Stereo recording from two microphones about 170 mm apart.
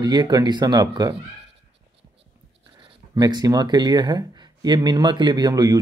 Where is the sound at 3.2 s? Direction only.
25° right (ahead or behind).